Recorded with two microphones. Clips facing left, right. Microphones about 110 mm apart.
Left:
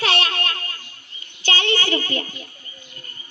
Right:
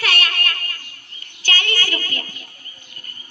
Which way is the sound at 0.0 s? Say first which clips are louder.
Left 1 dB; 25° left (ahead or behind).